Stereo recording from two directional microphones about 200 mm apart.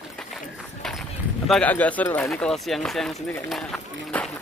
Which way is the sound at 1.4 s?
5° left (ahead or behind).